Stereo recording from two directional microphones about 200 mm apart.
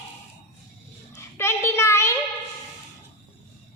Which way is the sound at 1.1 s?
15° left (ahead or behind).